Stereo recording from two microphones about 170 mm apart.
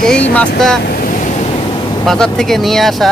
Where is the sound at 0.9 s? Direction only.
55° left (ahead or behind).